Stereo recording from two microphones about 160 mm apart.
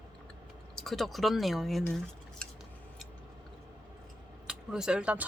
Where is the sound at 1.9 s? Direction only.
5° left (ahead or behind).